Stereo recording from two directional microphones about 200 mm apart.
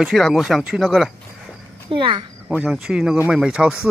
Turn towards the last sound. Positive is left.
turn(degrees=-5)  # may be behind; listen again after turning